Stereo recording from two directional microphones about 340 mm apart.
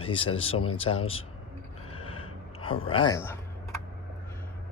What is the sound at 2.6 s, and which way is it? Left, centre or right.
Speech, centre.